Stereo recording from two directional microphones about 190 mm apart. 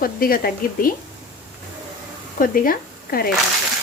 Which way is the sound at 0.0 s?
50° left (ahead or behind).